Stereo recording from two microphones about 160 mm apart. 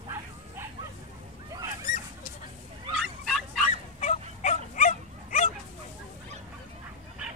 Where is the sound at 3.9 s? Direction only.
50° left (ahead or behind).